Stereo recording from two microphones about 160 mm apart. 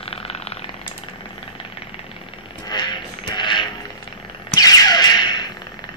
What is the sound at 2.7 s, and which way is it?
Music, 30° left (ahead or behind).